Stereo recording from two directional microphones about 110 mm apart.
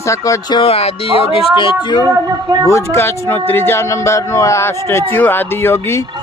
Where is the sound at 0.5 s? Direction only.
60° left (ahead or behind).